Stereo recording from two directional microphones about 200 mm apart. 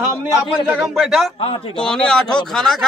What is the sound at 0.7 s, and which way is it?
Speech, centre (ahead or behind).